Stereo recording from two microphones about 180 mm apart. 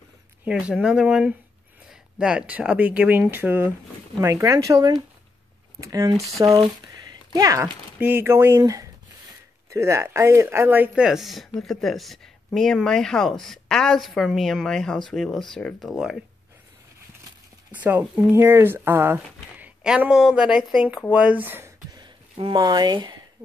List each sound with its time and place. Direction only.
0.5 s speech: 5° right (ahead or behind)
17.6 s speech: 10° right (ahead or behind)